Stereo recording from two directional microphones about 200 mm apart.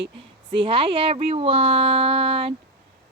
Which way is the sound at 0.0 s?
25° right (ahead or behind).